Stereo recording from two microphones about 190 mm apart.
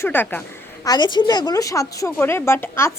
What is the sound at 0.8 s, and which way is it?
A woman's voice, 20° left (ahead or behind).